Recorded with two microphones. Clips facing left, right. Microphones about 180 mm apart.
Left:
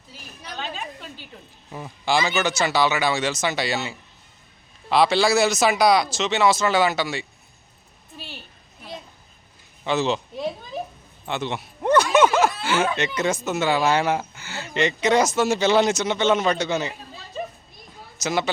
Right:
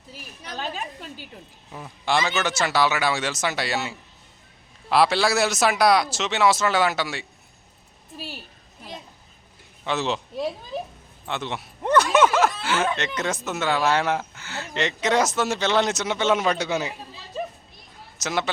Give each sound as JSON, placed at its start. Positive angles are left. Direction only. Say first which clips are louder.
{"t": 1.7, "sound": "speech", "louder": "left 1 dB", "side_deg": 0}
{"t": 8.1, "sound": "a child's voice", "louder": "right 3 dB", "side_deg": -40}
{"t": 9.8, "sound": "speech", "louder": "left 3 dB", "side_deg": 0}
{"t": 18.2, "sound": "speech", "louder": "left 2 dB", "side_deg": 0}